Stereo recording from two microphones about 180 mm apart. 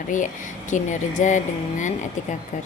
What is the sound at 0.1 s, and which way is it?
A woman's voice, 45° left (ahead or behind).